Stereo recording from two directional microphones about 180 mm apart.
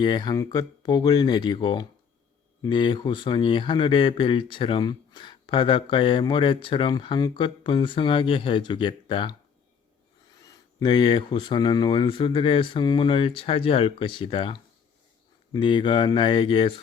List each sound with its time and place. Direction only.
0.0 s speech: 25° left (ahead or behind)
10.4 s speech: 20° left (ahead or behind)